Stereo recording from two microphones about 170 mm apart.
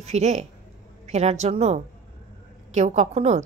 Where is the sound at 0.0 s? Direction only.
40° right (ahead or behind).